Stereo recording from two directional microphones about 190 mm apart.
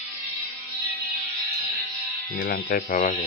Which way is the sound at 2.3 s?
50° left (ahead or behind).